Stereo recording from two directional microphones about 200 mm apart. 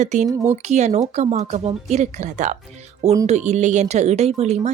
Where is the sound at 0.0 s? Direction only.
35° right (ahead or behind).